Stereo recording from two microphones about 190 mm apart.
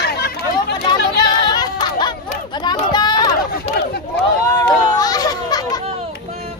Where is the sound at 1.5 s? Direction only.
20° left (ahead or behind).